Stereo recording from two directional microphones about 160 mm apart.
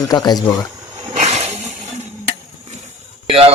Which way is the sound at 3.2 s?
35° right (ahead or behind).